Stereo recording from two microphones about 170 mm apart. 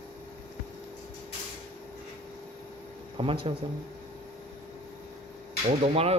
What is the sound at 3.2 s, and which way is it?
Speech, 30° right (ahead or behind).